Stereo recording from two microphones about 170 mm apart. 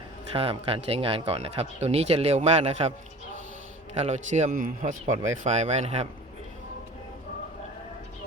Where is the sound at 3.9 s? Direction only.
40° right (ahead or behind).